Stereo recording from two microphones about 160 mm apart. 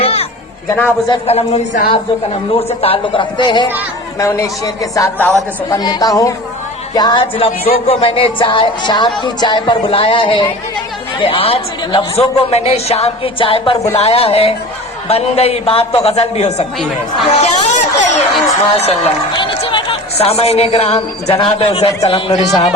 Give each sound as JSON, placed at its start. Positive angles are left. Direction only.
{"t": 0.0, "sound": "a sound", "side_deg": 40}
{"t": 0.7, "sound": "a man's voice", "side_deg": 15}
{"t": 1.3, "sound": "a woman's voice", "side_deg": 40}
{"t": 4.2, "sound": "a man's voice", "side_deg": 20}
{"t": 5.7, "sound": "a woman's voice", "side_deg": 25}